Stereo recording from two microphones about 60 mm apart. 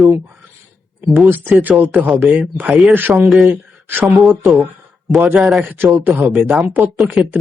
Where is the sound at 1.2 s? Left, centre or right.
Right.